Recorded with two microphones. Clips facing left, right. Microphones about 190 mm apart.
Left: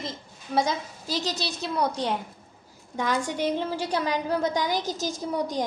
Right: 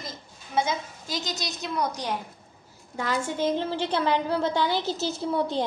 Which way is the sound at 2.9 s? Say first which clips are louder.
Left 1 dB; 15° left (ahead or behind).